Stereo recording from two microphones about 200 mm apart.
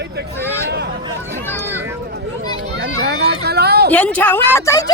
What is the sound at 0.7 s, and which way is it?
Hubbub, 55° right (ahead or behind).